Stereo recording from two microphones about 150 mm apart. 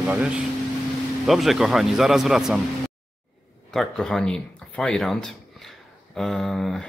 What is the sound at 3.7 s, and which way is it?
Speech, 5° left (ahead or behind).